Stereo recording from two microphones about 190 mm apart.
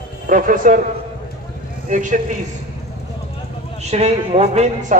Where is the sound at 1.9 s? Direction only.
40° right (ahead or behind).